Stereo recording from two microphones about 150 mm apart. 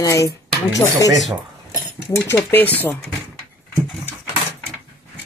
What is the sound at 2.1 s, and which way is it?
Speech, 15° left (ahead or behind).